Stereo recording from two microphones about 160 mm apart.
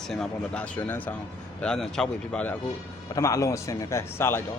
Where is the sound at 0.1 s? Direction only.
5° left (ahead or behind).